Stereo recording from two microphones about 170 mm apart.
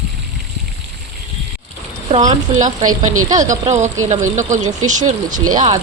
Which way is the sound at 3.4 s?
45° right (ahead or behind).